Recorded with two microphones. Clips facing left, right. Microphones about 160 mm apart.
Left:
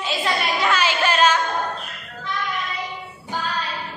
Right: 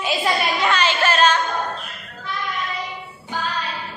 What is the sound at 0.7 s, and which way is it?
Music, 10° left (ahead or behind).